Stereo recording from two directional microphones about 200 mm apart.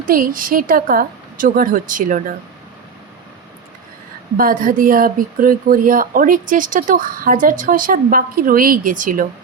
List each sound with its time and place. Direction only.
0.0 s speech: 45° right (ahead or behind)
4.4 s speech: 45° right (ahead or behind)